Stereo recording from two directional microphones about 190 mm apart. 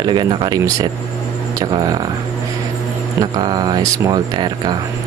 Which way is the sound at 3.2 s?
20° right (ahead or behind).